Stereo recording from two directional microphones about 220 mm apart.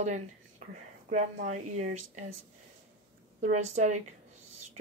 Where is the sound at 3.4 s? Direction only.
30° right (ahead or behind).